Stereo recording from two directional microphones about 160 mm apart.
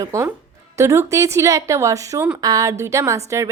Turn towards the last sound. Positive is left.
turn(degrees=-20)  # may be behind; listen again after turning